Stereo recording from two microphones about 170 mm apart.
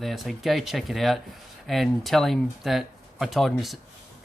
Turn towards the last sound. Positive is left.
turn(degrees=0)  # may be behind; listen again after turning